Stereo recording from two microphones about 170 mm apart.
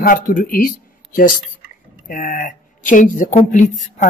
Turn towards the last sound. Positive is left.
turn(degrees=50)  # may be behind; listen again after turning